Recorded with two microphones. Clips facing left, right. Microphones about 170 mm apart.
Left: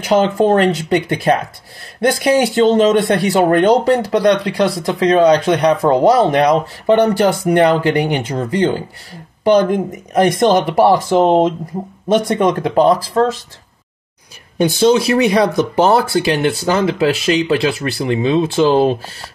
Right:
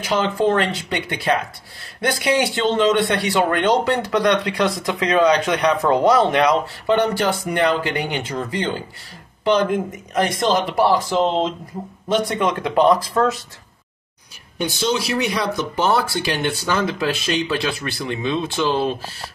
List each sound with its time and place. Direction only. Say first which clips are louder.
0.0 s speech: left 6 dB; 45° left (ahead or behind); by 13.4 s 25° left (ahead or behind)
14.6 s speech: left 10 dB; 50° left (ahead or behind)